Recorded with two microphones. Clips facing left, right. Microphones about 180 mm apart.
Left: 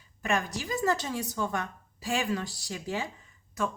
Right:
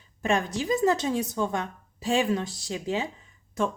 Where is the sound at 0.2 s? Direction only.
25° right (ahead or behind).